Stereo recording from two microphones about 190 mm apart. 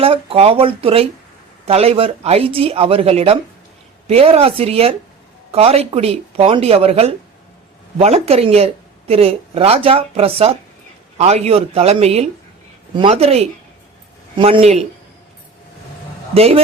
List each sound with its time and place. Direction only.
0.0 s speech: 30° right (ahead or behind)
16.3 s a man's voice: 30° right (ahead or behind)